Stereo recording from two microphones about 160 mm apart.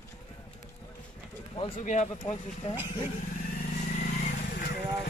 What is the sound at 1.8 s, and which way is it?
Speech, 45° left (ahead or behind).